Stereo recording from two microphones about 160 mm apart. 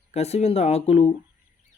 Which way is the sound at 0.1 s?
40° left (ahead or behind).